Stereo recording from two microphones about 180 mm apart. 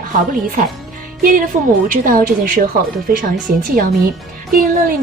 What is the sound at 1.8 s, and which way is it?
A woman's voice, 50° right (ahead or behind).